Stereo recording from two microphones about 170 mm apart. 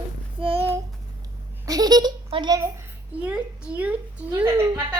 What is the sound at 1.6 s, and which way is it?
A child's voice, 20° right (ahead or behind).